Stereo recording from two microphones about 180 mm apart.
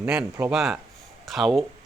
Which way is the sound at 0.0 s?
10° right (ahead or behind).